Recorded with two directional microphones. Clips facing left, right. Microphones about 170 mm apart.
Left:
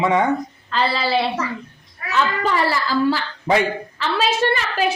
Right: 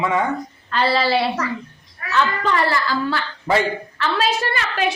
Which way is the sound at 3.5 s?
20° left (ahead or behind).